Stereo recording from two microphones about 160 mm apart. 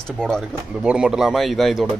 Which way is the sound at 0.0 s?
5° left (ahead or behind).